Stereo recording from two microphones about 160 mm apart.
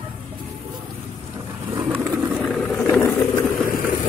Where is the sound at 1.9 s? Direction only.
10° right (ahead or behind).